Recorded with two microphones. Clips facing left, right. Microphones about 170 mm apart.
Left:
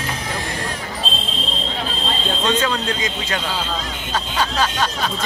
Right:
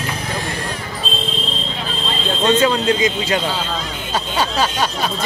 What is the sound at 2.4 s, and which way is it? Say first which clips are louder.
Speech: right 7 dB; 10° right (ahead or behind).